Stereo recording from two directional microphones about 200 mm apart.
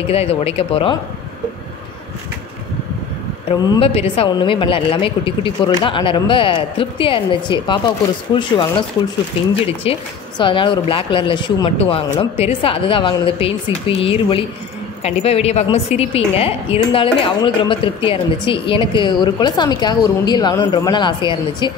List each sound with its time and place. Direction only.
0.1 s a woman's voice: 30° left (ahead or behind)
3.6 s a woman's voice: 20° left (ahead or behind)
9.6 s a woman's voice: 25° left (ahead or behind)